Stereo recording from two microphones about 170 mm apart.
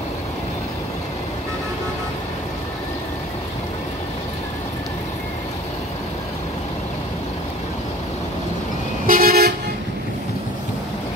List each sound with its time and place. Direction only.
9.0 s toot: 60° right (ahead or behind)